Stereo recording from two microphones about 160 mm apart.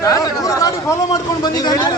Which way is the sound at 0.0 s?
20° left (ahead or behind).